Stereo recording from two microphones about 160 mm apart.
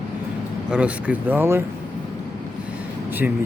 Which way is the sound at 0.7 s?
10° right (ahead or behind).